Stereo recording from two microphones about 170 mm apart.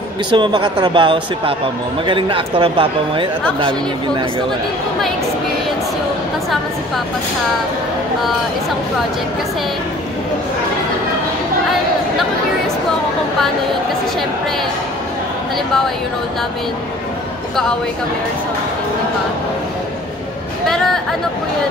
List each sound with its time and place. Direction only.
0.3 s speech: 30° right (ahead or behind)
20.6 s speech: 5° left (ahead or behind)